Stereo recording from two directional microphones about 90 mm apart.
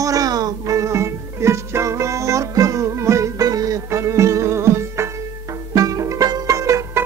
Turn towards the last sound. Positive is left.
turn(degrees=-35)  # may be behind; listen again after turning